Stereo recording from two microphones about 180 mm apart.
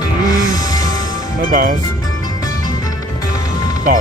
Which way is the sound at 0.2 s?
20° left (ahead or behind).